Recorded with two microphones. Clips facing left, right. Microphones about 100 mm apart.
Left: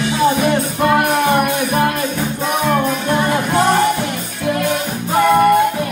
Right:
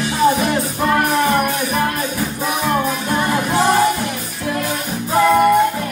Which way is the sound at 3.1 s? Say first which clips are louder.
Left 2 dB; 5° right (ahead or behind).